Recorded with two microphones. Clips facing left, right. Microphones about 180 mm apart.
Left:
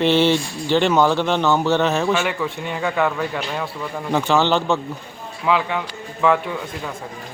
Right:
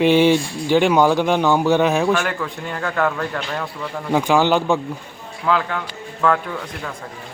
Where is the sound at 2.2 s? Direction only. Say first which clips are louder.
Left 1 dB; 10° left (ahead or behind).